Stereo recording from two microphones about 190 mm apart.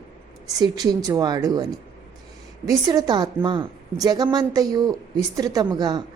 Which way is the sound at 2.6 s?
20° right (ahead or behind).